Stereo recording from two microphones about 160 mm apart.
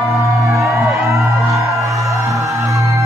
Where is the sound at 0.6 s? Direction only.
20° right (ahead or behind).